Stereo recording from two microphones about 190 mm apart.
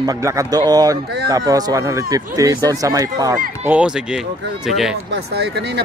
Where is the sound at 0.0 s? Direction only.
20° right (ahead or behind).